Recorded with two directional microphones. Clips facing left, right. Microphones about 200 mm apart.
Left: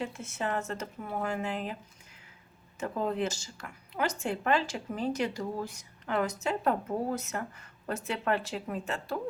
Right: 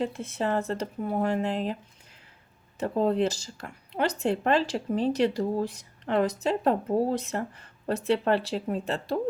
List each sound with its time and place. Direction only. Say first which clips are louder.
0.0 s speech: right 6 dB; 35° right (ahead or behind)
2.7 s speech: right 7 dB; 35° right (ahead or behind)